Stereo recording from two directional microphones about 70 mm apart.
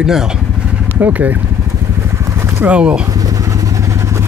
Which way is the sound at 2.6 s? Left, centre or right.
Centre.